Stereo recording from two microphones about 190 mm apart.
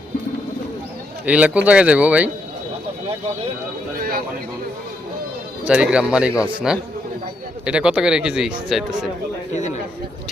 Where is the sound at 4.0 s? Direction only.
50° right (ahead or behind).